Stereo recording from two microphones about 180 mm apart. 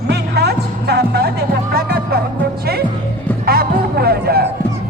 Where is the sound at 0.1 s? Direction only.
65° right (ahead or behind).